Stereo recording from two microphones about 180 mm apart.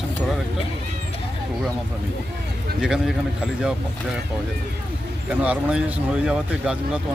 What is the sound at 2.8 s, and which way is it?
Speech, 5° right (ahead or behind).